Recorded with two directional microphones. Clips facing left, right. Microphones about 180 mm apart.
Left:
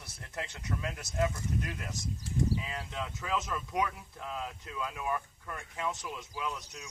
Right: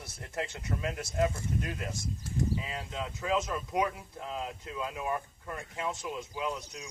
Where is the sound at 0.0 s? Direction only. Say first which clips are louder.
Right 4 dB; 25° right (ahead or behind).